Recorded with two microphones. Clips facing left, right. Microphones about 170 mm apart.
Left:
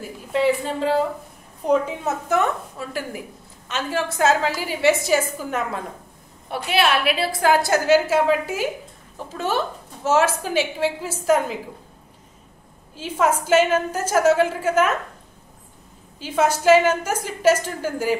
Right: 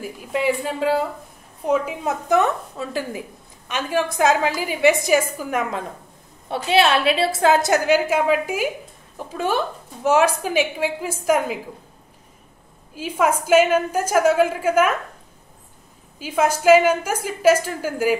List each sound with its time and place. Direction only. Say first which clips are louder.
0.3 s a woman's voice: left 2 dB; 10° right (ahead or behind)
6.5 s a woman's voice: right 3 dB; 25° right (ahead or behind)
12.9 s a woman's voice: right 1 dB; 10° right (ahead or behind)
16.2 s a woman's voice: even; 10° right (ahead or behind)